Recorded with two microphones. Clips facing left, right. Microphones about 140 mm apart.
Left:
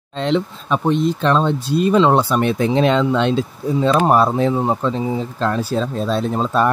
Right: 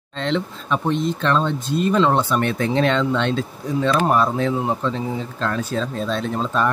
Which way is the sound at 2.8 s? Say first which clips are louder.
Left 3 dB; 10° left (ahead or behind).